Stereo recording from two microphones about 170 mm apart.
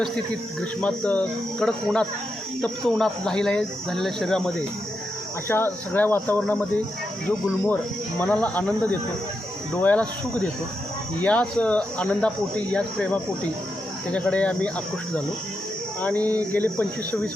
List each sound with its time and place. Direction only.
0.6 s speech: 5° left (ahead or behind)
8.2 s speech: 10° left (ahead or behind)
11.2 s speech: 10° left (ahead or behind)
16.0 s speech: 10° left (ahead or behind)